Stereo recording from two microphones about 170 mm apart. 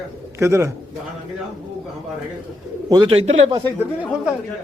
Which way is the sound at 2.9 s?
30° right (ahead or behind).